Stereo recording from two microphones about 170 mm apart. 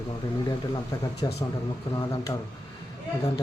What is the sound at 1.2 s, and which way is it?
Speech, 25° left (ahead or behind).